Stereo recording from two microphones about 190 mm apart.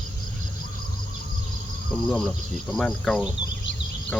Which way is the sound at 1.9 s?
Centre (ahead or behind).